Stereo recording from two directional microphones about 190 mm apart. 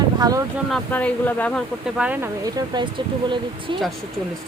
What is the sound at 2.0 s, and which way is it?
Speech, 5° right (ahead or behind).